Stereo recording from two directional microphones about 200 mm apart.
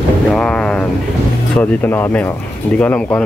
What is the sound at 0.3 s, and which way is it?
Boat, 5° left (ahead or behind).